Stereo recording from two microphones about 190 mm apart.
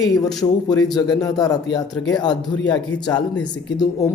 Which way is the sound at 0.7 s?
20° left (ahead or behind).